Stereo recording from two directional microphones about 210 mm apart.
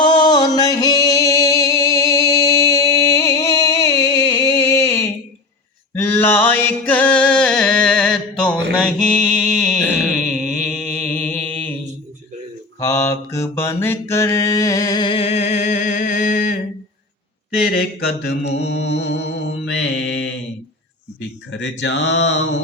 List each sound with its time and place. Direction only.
0.0 s music: 20° left (ahead or behind)
5.9 s a sound: 10° left (ahead or behind)
8.8 s mantra: 5° left (ahead or behind)
12.8 s mantra: 15° left (ahead or behind); by 16.6 s 40° left (ahead or behind)
17.7 s mantra: 50° left (ahead or behind)
21.5 s mantra: 55° left (ahead or behind)